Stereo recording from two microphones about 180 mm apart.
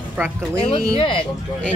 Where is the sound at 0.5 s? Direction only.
30° left (ahead or behind).